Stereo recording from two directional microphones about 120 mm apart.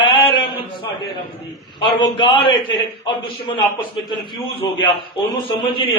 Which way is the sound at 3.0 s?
45° left (ahead or behind).